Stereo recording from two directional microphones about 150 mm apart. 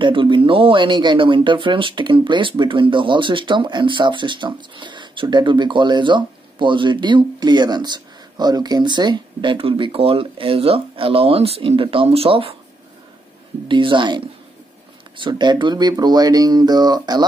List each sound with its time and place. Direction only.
0.0 s speech: 35° right (ahead or behind)
13.7 s speech: 35° right (ahead or behind)